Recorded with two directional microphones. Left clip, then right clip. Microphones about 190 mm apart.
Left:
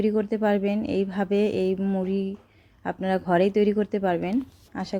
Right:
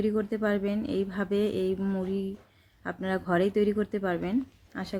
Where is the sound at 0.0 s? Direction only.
15° left (ahead or behind).